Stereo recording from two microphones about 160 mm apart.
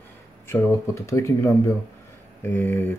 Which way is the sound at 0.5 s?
15° left (ahead or behind).